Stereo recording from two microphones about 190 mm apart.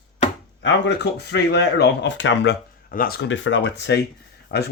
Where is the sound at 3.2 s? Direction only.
75° left (ahead or behind).